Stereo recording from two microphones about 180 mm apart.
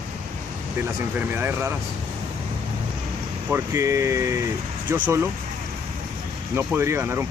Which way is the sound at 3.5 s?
15° right (ahead or behind).